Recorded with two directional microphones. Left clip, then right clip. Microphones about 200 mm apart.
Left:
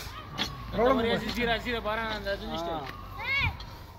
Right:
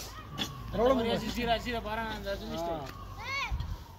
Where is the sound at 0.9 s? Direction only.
60° right (ahead or behind).